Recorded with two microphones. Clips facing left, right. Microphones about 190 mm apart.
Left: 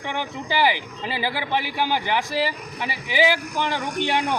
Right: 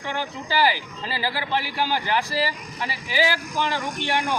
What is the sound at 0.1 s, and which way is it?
Speech, 20° left (ahead or behind).